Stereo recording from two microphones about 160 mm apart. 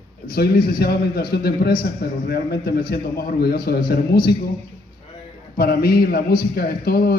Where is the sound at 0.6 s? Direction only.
70° left (ahead or behind).